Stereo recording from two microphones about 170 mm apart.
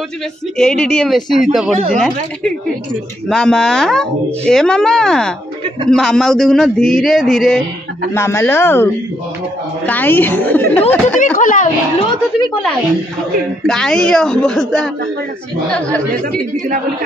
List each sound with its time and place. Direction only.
0.6 s speech: 5° left (ahead or behind)
8.1 s a woman's voice: 15° left (ahead or behind)
11.3 s a woman's voice: 50° left (ahead or behind)
13.7 s speech: 5° left (ahead or behind)